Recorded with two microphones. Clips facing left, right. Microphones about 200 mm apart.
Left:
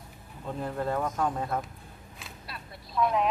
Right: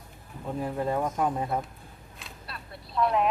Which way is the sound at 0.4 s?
10° right (ahead or behind).